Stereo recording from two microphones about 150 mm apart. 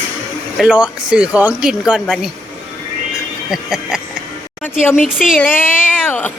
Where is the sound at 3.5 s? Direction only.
5° right (ahead or behind).